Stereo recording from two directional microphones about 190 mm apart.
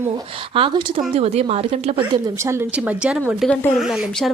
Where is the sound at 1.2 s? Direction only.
35° right (ahead or behind).